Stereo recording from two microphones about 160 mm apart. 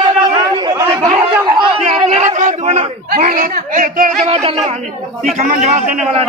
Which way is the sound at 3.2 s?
55° right (ahead or behind).